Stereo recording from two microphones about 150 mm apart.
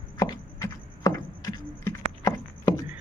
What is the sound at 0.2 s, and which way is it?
Chopping, 25° left (ahead or behind).